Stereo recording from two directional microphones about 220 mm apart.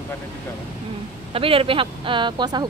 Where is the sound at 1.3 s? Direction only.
25° right (ahead or behind).